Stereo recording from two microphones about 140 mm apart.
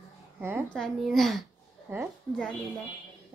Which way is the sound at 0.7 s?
Centre (ahead or behind).